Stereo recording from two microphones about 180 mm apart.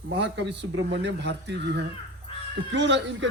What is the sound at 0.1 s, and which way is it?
Speech, 80° right.